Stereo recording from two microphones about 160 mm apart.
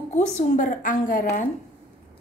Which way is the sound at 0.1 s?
50° left (ahead or behind).